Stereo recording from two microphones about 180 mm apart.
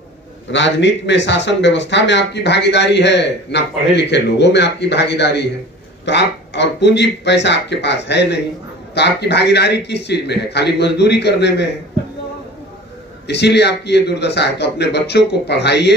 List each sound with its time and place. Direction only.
0.5 s speech: 80° left
13.3 s speech: 70° left (ahead or behind)